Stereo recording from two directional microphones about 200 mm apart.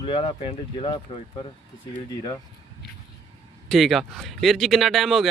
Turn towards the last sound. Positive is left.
turn(degrees=0)  # may be behind; listen again after turning